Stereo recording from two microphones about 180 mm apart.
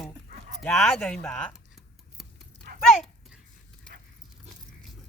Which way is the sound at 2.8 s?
Centre (ahead or behind).